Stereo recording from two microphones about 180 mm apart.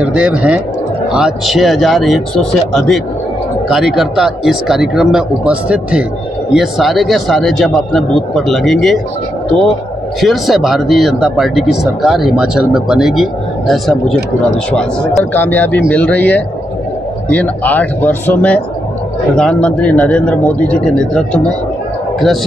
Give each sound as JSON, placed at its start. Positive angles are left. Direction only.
{"t": 0.0, "sound": "speech", "side_deg": -5}
{"t": 10.2, "sound": "speech", "side_deg": 0}